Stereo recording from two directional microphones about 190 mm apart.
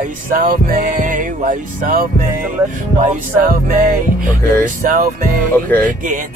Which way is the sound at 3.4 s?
50° right (ahead or behind).